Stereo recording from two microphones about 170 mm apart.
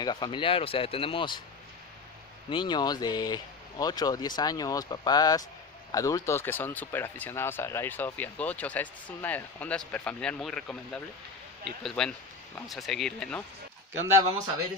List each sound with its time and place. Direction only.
0.0 s speech: 25° left (ahead or behind)
2.5 s speech: 25° left (ahead or behind); by 13.4 s 5° left (ahead or behind)
13.9 s speech: 15° right (ahead or behind)